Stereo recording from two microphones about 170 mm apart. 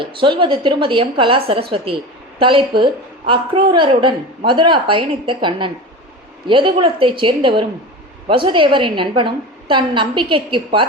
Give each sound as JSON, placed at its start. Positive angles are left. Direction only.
{"t": 0.0, "sound": "a woman's voice", "side_deg": -30}